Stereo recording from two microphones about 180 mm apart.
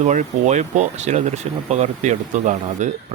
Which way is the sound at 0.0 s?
40° right (ahead or behind).